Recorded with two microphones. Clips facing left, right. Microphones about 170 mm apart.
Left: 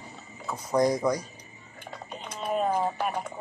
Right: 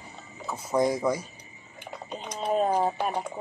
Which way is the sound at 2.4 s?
35° right (ahead or behind).